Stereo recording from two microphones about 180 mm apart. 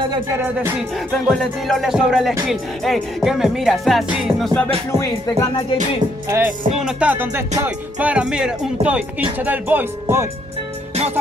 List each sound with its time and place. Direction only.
0.4 s music: 10° right (ahead or behind)
1.2 s music: centre (ahead or behind)
6.3 s music: 5° right (ahead or behind)